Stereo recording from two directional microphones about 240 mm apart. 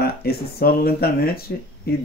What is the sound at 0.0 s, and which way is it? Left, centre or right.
Speech, left.